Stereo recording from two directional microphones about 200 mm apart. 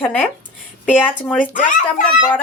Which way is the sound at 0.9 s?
10° left (ahead or behind).